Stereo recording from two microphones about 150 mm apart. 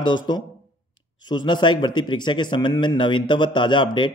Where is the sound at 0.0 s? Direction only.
30° left (ahead or behind).